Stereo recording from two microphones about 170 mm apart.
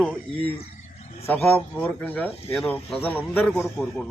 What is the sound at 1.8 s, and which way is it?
Speech, 10° left (ahead or behind).